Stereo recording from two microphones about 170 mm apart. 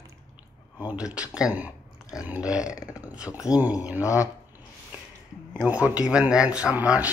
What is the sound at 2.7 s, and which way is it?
Speech, 20° left (ahead or behind).